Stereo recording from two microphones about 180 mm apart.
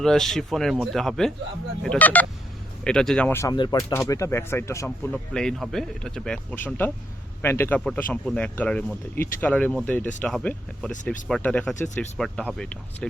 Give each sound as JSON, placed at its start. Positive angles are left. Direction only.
{"t": 0.0, "sound": "speech", "side_deg": 0}
{"t": 3.5, "sound": "speech", "side_deg": 25}
{"t": 5.3, "sound": "speech", "side_deg": 5}